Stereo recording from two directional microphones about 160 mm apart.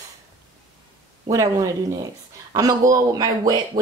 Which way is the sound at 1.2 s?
20° right (ahead or behind).